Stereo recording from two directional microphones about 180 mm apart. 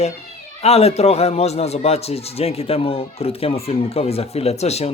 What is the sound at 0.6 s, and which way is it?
Speech, 35° left (ahead or behind).